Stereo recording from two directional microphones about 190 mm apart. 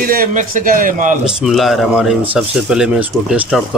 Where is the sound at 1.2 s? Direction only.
Centre (ahead or behind).